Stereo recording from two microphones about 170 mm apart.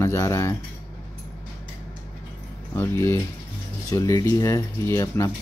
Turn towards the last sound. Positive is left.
turn(degrees=15)  # may be behind; listen again after turning